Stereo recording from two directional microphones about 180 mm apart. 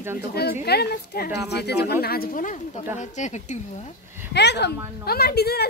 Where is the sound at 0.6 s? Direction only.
65° left (ahead or behind); by 3.6 s 40° left (ahead or behind).